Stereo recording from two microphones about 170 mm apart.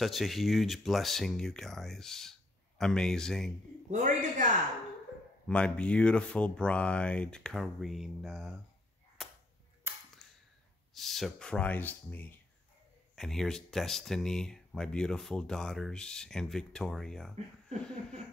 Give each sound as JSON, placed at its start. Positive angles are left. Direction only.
{"t": 0.0, "sound": "speech", "side_deg": 0}
{"t": 3.9, "sound": "speech", "side_deg": -50}
{"t": 5.5, "sound": "speech", "side_deg": 5}
{"t": 9.9, "sound": "cap gun", "side_deg": -15}
{"t": 11.0, "sound": "speech", "side_deg": 0}